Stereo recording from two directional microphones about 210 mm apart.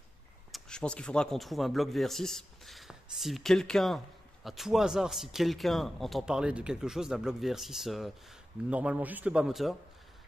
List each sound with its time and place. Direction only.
0.5 s speech: 5° left (ahead or behind)